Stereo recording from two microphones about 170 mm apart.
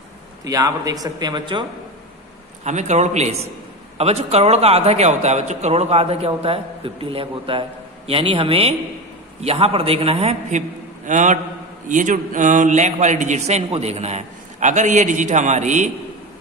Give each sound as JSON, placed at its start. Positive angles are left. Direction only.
{"t": 0.5, "sound": "speech", "side_deg": -20}
{"t": 2.6, "sound": "a man's voice", "side_deg": -45}
{"t": 11.1, "sound": "a man's voice", "side_deg": -45}